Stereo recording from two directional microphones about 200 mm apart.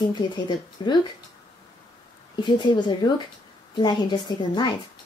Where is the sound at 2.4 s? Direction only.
20° left (ahead or behind).